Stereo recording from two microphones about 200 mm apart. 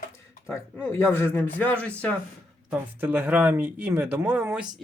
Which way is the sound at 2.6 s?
10° right (ahead or behind).